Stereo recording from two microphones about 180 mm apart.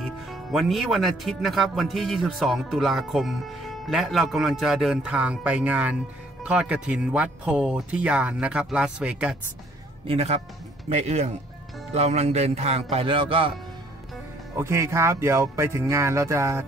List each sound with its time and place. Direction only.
0.0 s speech: centre (ahead or behind)
10.0 s a man's voice: 35° right (ahead or behind)
14.6 s speech: 15° right (ahead or behind)